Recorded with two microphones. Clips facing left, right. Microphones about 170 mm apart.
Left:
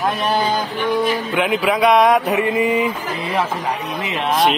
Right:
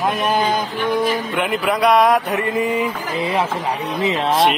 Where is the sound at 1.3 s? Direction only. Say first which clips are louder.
Left 2 dB; centre (ahead or behind).